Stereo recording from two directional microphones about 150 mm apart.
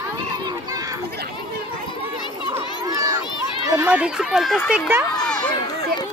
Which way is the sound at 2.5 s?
25° right (ahead or behind).